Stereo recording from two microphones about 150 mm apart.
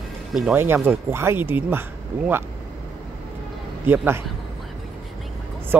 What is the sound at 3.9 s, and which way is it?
Speech, 15° right (ahead or behind).